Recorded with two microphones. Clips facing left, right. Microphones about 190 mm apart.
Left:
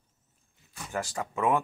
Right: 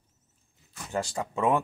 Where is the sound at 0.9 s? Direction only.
30° right (ahead or behind).